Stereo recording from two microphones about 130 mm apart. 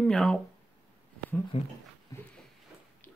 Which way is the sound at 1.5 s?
50° left (ahead or behind).